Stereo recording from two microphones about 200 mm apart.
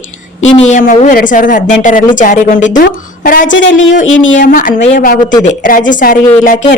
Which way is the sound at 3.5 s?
65° left (ahead or behind).